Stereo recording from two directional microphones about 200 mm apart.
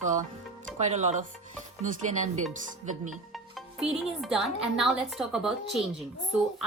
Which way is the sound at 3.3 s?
Centre (ahead or behind).